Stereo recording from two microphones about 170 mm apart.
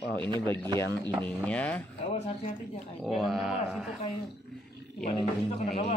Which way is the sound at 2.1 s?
40° left (ahead or behind).